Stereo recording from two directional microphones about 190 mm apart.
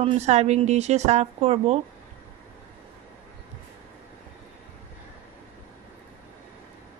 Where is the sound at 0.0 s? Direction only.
35° right (ahead or behind).